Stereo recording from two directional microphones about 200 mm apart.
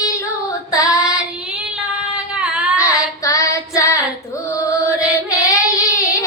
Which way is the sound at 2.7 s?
15° left (ahead or behind).